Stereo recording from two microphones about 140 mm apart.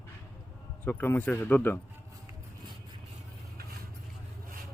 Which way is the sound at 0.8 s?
15° left (ahead or behind).